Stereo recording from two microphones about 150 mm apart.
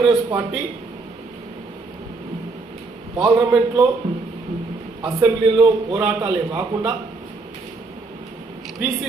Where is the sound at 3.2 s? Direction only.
20° right (ahead or behind).